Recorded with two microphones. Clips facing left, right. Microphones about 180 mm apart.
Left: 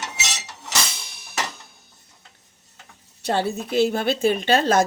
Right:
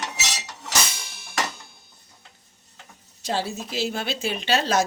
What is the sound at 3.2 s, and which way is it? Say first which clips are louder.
Speech: left 4 dB; 60° left (ahead or behind).